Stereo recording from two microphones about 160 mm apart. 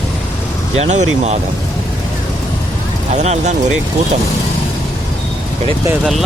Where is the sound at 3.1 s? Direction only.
45° right (ahead or behind).